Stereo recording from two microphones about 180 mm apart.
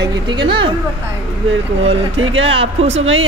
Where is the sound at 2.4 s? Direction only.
30° right (ahead or behind).